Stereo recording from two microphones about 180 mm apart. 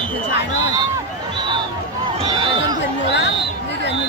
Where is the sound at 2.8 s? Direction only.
75° left (ahead or behind).